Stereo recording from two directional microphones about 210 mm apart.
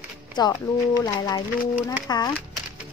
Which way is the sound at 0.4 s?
20° left (ahead or behind).